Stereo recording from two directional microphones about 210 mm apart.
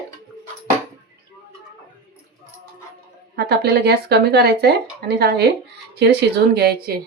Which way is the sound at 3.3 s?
50° right (ahead or behind).